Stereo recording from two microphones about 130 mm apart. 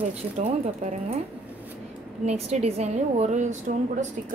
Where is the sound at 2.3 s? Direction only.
55° right (ahead or behind).